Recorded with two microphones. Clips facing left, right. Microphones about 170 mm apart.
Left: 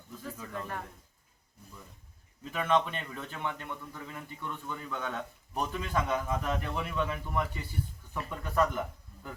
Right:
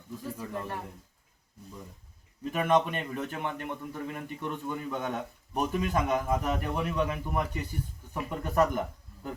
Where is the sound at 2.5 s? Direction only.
15° right (ahead or behind).